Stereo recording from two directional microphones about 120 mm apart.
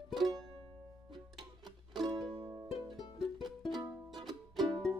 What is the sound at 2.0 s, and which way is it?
Music, 35° right (ahead or behind).